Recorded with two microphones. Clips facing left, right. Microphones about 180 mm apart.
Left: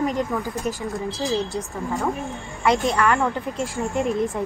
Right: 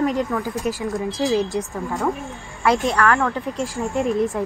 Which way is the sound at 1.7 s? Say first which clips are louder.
Right 1 dB; centre (ahead or behind).